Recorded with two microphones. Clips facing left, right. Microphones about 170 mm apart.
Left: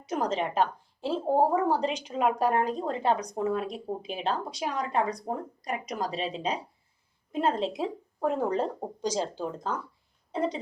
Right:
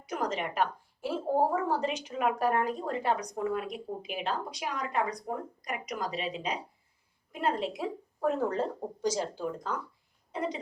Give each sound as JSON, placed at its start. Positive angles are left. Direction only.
{"t": 0.0, "sound": "a woman's voice", "side_deg": 25}